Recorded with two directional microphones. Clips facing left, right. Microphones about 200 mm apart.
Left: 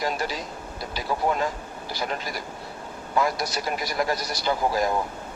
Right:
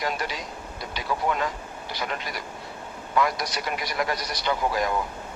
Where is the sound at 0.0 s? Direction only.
35° left (ahead or behind).